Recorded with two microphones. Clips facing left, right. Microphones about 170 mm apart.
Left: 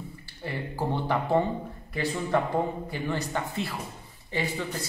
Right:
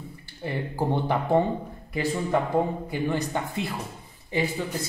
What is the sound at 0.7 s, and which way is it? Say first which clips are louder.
Speech: right 2 dB; 15° right (ahead or behind).